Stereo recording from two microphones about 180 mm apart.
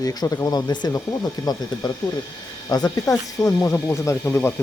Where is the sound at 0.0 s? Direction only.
20° left (ahead or behind).